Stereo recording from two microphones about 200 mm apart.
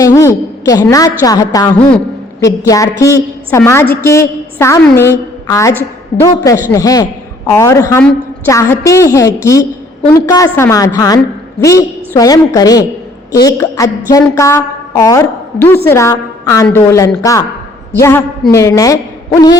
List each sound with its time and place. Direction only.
0.0 s a woman's voice: 15° left (ahead or behind)